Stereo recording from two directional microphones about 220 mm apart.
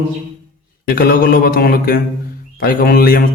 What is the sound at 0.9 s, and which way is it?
A man's voice, 45° left (ahead or behind).